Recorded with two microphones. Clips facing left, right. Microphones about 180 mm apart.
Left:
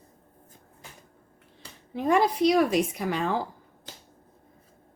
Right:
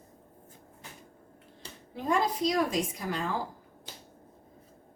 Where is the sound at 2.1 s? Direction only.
70° left (ahead or behind).